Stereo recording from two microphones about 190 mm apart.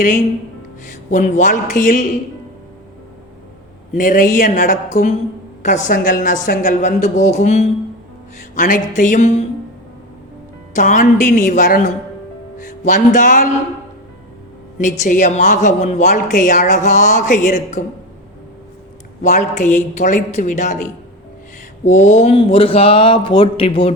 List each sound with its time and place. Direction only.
0.9 s speech: 40° left (ahead or behind)
3.9 s speech: 45° left (ahead or behind)
10.8 s speech: 40° left (ahead or behind)
14.8 s speech: 40° left (ahead or behind)
19.2 s speech: 40° left (ahead or behind)
21.8 s speech: 40° left (ahead or behind)